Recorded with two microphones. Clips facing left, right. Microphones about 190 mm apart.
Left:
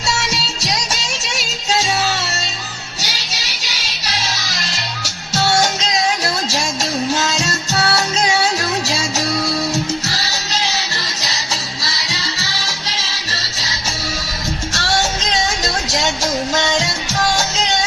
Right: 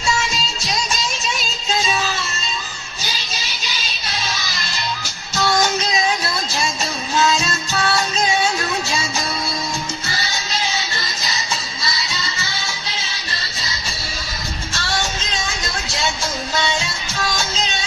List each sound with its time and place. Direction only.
0.2 s music: 75° left (ahead or behind)
15.2 s music: 75° left (ahead or behind)